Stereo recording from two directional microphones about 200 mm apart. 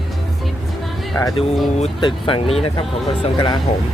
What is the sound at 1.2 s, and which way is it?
Speech, 15° left (ahead or behind).